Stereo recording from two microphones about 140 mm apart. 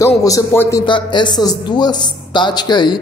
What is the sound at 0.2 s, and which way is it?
Speech, 20° left (ahead or behind).